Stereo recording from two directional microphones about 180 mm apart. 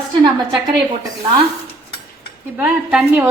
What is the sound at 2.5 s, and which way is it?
Speech, 5° right (ahead or behind).